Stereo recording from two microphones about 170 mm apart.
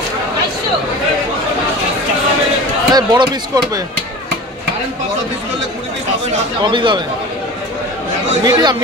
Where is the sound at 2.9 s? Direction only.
25° right (ahead or behind).